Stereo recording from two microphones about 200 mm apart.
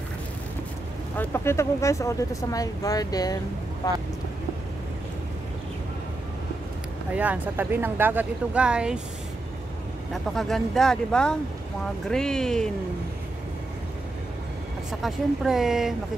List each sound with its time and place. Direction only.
1.1 s speech: 10° left (ahead or behind)
7.2 s speech: 10° right (ahead or behind)
10.1 s speech: centre (ahead or behind)
14.9 s speech: centre (ahead or behind)